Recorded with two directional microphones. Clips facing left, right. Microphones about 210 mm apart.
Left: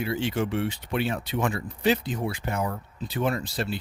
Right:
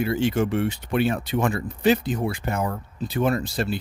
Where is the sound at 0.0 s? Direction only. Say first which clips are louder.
Right 5 dB; 50° right (ahead or behind).